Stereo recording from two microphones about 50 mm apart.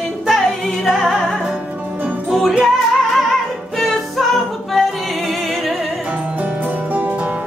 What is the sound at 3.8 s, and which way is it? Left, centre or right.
Music, centre.